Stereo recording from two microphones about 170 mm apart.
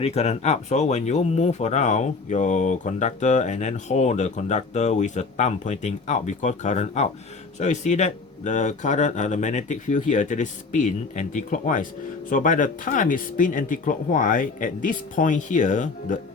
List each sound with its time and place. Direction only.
0.0 s speech: 40° left (ahead or behind)